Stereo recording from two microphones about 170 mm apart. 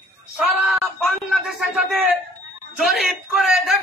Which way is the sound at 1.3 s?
Centre (ahead or behind).